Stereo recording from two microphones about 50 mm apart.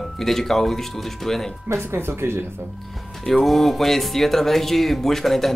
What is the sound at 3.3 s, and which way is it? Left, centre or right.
Speech, centre.